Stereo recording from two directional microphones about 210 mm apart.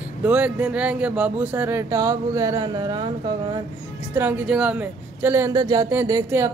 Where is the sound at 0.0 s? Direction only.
5° right (ahead or behind).